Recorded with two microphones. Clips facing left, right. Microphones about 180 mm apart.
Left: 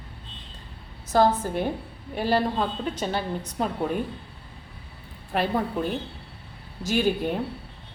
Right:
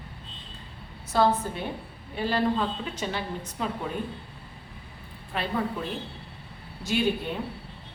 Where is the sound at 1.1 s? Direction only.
45° left (ahead or behind).